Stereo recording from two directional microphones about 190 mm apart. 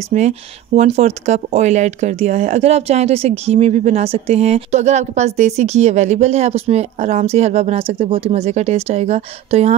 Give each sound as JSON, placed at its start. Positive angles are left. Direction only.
{"t": 0.1, "sound": "speech", "side_deg": -35}